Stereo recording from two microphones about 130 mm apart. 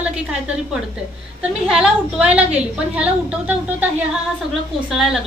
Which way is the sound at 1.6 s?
5° right (ahead or behind).